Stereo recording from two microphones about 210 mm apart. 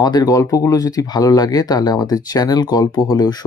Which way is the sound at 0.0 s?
20° left (ahead or behind).